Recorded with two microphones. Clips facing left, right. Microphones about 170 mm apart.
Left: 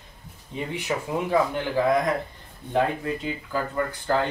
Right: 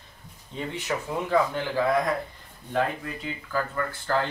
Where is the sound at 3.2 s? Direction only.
20° left (ahead or behind).